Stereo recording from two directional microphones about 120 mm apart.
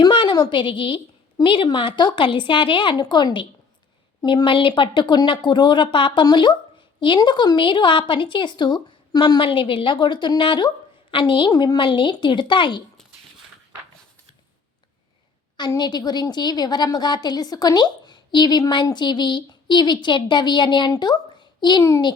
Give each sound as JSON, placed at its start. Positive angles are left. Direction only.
{"t": 0.0, "sound": "a woman's voice", "side_deg": 45}
{"t": 15.8, "sound": "a woman's voice", "side_deg": 35}